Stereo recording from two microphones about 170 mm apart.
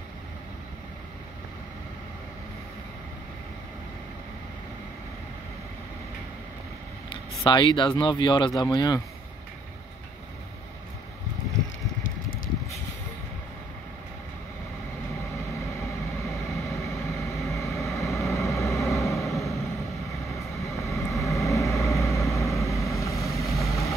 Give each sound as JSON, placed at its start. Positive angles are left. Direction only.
{"t": 7.1, "sound": "speech", "side_deg": 25}
{"t": 15.8, "sound": "vehicle", "side_deg": 15}